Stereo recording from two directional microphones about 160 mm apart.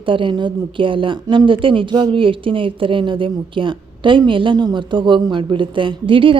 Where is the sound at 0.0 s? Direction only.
30° right (ahead or behind).